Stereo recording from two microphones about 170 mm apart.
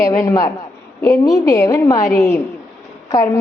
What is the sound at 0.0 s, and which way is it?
A woman's voice, 15° left (ahead or behind).